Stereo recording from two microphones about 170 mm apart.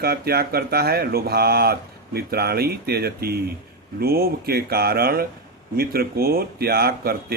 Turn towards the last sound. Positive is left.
turn(degrees=-65)  # may be behind; listen again after turning